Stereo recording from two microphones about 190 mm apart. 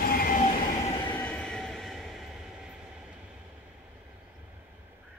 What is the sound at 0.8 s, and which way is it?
Train, 25° left (ahead or behind).